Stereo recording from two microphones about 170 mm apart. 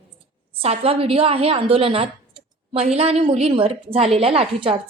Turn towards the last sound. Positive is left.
turn(degrees=-35)  # may be behind; listen again after turning